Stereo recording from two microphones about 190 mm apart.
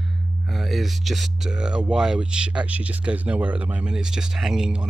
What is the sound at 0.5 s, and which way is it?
Speech, centre (ahead or behind).